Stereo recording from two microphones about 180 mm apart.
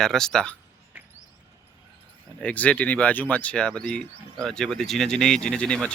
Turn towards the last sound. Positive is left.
turn(degrees=5)  # may be behind; listen again after turning